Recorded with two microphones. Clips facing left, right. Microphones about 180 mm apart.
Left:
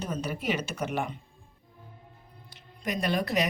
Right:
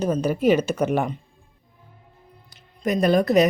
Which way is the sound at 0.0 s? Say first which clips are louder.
Right 12 dB; 40° right (ahead or behind).